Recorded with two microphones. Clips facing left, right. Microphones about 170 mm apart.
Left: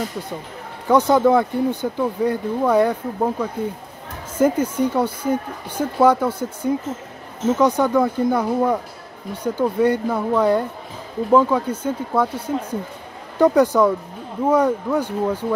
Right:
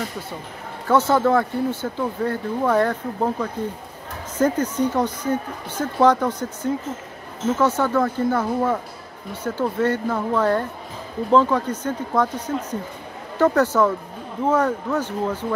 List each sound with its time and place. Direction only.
0.8 s speech: 15° left (ahead or behind)